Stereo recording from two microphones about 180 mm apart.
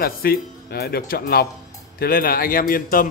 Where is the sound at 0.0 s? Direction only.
55° left (ahead or behind).